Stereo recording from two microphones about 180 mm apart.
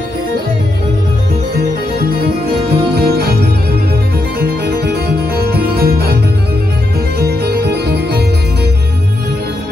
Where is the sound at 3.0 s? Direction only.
65° right (ahead or behind).